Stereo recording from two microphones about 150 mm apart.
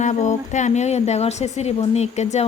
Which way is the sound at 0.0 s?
50° left (ahead or behind).